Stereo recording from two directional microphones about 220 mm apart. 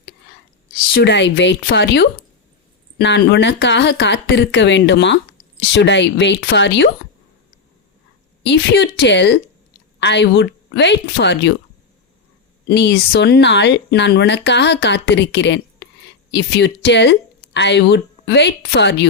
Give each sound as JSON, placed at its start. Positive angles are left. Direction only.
{"t": 0.9, "sound": "speech", "side_deg": 50}
{"t": 8.4, "sound": "speech", "side_deg": 50}
{"t": 12.6, "sound": "speech", "side_deg": 50}